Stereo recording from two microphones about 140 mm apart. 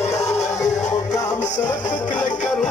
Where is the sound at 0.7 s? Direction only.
55° left (ahead or behind).